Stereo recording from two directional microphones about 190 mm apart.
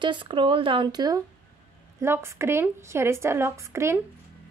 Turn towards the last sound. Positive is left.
turn(degrees=-15)  # may be behind; listen again after turning